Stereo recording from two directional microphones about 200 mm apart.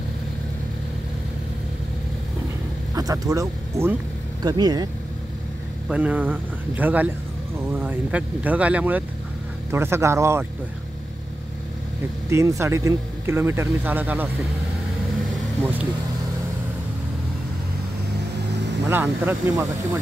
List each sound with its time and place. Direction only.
2.9 s speech: 15° right (ahead or behind)
5.9 s speech: 5° right (ahead or behind)
12.3 s speech: 15° right (ahead or behind)
15.3 s vehicle: 5° right (ahead or behind)
18.9 s speech: 10° right (ahead or behind)